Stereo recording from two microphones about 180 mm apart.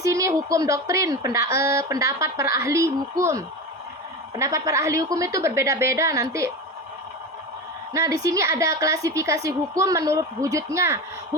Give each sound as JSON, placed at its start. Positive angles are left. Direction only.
{"t": 0.0, "sound": "a woman's voice", "side_deg": -15}
{"t": 7.9, "sound": "a woman's voice", "side_deg": -15}